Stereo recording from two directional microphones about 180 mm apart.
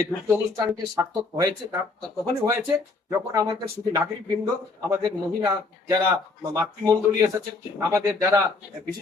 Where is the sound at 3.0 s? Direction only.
15° right (ahead or behind).